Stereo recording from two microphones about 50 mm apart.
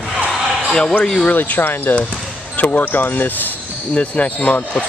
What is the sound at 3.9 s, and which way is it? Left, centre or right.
Speech, left.